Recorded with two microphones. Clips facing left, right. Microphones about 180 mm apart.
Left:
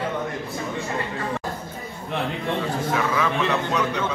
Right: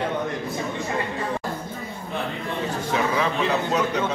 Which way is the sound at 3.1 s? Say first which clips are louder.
Even; 35° right (ahead or behind).